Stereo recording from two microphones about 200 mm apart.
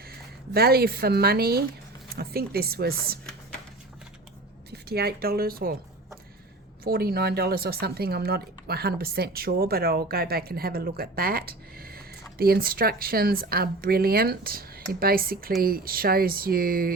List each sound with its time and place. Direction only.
0.5 s speech: 50° right (ahead or behind)
4.7 s a woman's voice: 50° right (ahead or behind)
6.8 s speech: 50° right (ahead or behind)